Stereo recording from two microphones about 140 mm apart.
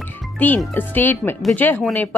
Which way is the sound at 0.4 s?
10° left (ahead or behind).